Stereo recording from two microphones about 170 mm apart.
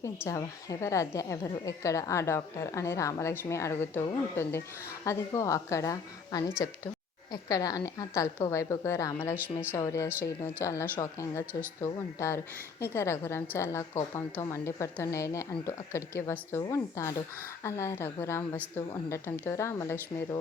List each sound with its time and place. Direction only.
0.0 s a woman's voice: 20° left (ahead or behind)